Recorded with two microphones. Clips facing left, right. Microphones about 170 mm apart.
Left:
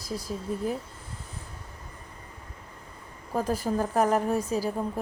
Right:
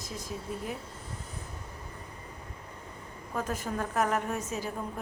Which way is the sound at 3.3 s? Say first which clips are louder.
Left 6 dB; 35° left (ahead or behind).